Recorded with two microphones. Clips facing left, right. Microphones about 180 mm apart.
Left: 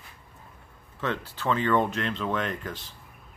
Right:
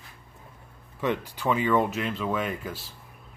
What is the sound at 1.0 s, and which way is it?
Speech, 15° right (ahead or behind).